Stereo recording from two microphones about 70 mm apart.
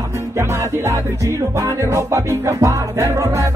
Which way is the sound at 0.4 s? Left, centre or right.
Right.